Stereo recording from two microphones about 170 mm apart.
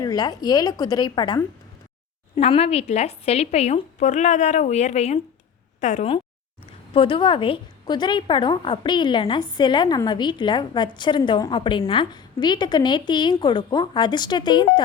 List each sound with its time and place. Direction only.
0.0 s a woman's voice: 25° left (ahead or behind); by 6.1 s 45° left (ahead or behind)
6.9 s a woman's voice: 30° left (ahead or behind)